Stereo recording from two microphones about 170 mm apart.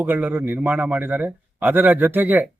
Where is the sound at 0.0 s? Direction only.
10° right (ahead or behind).